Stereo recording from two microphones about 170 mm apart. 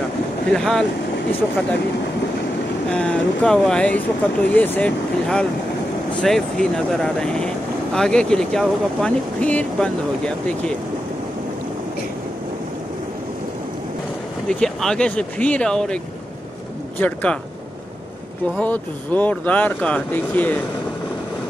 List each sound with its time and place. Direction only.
0.5 s speech: 5° left (ahead or behind)
2.9 s speech: 5° left (ahead or behind)
14.5 s speech: 5° left (ahead or behind)
17.0 s speech: 10° left (ahead or behind)
18.6 s speech: 10° left (ahead or behind)